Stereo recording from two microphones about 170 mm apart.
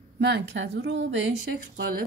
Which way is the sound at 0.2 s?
90° right.